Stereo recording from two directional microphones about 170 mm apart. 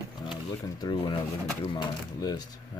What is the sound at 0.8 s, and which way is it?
Speech, 25° left (ahead or behind).